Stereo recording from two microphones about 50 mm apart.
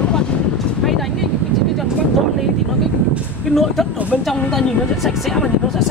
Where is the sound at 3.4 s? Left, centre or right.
Centre.